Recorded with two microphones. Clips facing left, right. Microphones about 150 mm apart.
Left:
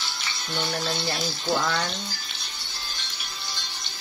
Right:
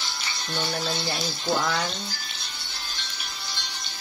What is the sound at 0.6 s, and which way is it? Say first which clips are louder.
Speech: even; centre (ahead or behind).